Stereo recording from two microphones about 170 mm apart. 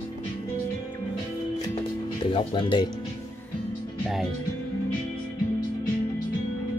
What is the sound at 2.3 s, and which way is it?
Speech, 30° left (ahead or behind).